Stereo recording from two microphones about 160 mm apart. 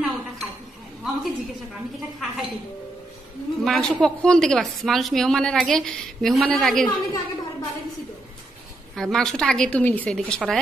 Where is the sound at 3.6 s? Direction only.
Centre (ahead or behind).